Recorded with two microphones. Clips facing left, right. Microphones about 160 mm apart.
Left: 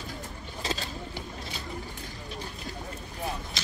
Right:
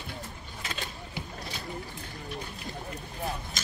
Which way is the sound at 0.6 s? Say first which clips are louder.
Left 5 dB; 30° left (ahead or behind).